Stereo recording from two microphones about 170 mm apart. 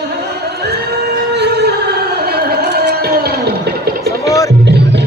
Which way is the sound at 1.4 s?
70° right (ahead or behind).